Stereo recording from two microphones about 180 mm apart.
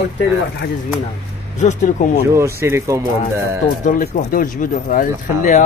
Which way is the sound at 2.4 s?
15° right (ahead or behind).